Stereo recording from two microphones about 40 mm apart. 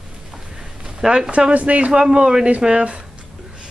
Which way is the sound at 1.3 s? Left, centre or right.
Right.